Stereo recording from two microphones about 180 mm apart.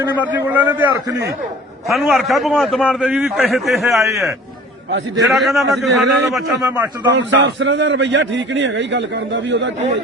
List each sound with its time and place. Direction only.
0.2 s a man's voice: 10° right (ahead or behind)
4.0 s a man's voice: 15° right (ahead or behind)
5.3 s a man's voice: centre (ahead or behind)
6.7 s a man's voice: 10° right (ahead or behind)
7.2 s a man's voice: 85° right